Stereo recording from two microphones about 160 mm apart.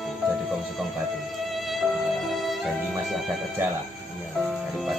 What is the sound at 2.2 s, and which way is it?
Speech, centre (ahead or behind).